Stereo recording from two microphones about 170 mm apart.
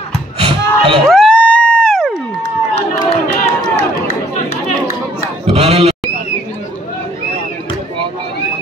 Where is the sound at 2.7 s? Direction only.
35° left (ahead or behind).